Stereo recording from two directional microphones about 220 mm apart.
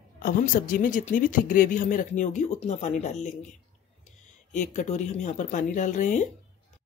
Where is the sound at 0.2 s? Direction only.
40° left (ahead or behind).